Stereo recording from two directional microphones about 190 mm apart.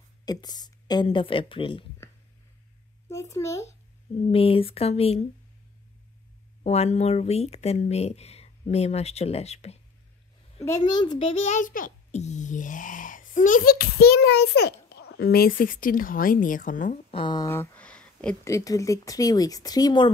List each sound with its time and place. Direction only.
0.2 s a woman's voice: 20° left (ahead or behind)
3.1 s a child's voice: 15° left (ahead or behind)
4.2 s speech: 30° left (ahead or behind)
6.6 s speech: 35° left (ahead or behind)
10.6 s a child's voice: 20° left (ahead or behind); by 17.0 s 40° left (ahead or behind)
17.1 s speech: 25° left (ahead or behind); by 18.5 s 5° left (ahead or behind)
18.5 s a woman's voice: 15° left (ahead or behind)